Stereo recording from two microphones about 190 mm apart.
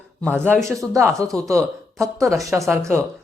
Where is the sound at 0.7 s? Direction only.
15° right (ahead or behind).